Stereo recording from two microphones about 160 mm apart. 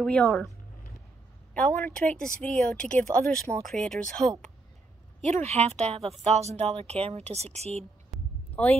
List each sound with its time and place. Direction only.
0.0 s speech: 5° left (ahead or behind)
1.5 s speech: 10° left (ahead or behind)
4.2 s speech: 25° right (ahead or behind)
5.2 s speech: 45° right (ahead or behind)
8.1 s a sound: centre (ahead or behind)